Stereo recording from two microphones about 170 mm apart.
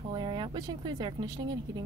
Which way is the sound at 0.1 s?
25° right (ahead or behind).